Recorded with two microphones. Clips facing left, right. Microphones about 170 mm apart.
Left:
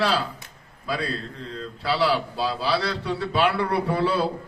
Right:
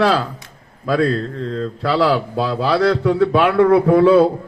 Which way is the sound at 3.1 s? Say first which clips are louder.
Right 5 dB; 90° right.